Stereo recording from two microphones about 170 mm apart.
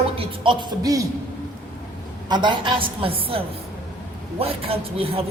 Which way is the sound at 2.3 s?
25° right (ahead or behind).